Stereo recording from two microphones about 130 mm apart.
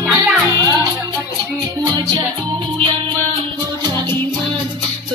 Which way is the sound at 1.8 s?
25° right (ahead or behind).